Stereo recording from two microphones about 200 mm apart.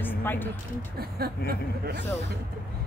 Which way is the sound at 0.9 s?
50° right (ahead or behind).